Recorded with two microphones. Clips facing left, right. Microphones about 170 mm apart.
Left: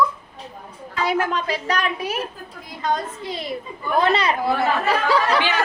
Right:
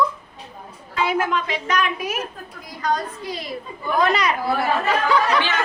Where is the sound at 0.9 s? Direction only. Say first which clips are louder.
Even; 40° left (ahead or behind).